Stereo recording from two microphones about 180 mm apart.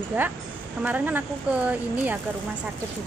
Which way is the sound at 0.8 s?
10° right (ahead or behind).